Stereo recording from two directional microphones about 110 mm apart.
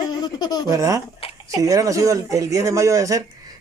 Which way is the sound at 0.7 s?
30° right (ahead or behind).